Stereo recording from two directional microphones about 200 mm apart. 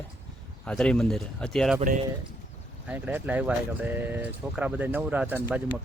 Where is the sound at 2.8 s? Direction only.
10° right (ahead or behind).